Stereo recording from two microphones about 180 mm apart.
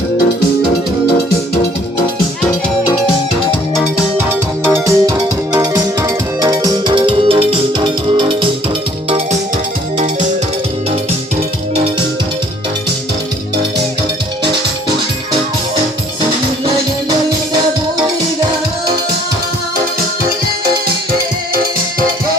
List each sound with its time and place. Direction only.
4.7 s music: 15° right (ahead or behind); by 9.4 s 35° right (ahead or behind)